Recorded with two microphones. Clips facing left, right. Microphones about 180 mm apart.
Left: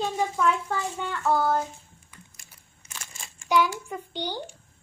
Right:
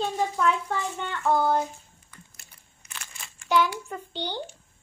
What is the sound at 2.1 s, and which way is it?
Computer keyboard, 15° left (ahead or behind).